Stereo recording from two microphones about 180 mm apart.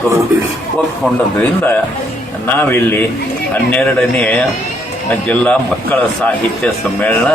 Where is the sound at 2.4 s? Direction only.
10° left (ahead or behind).